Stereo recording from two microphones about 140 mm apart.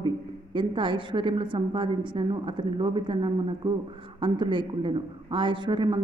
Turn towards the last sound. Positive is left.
turn(degrees=-35)  # may be behind; listen again after turning